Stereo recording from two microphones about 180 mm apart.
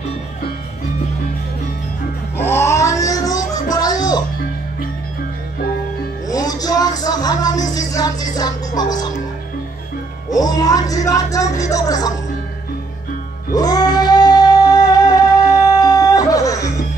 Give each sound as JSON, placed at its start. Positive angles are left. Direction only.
{"t": 2.3, "sound": "music", "side_deg": 15}
{"t": 6.2, "sound": "music", "side_deg": 20}
{"t": 10.3, "sound": "music", "side_deg": 20}
{"t": 13.5, "sound": "music", "side_deg": 20}